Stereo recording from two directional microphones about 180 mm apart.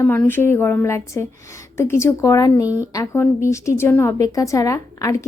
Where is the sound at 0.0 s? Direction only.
10° left (ahead or behind).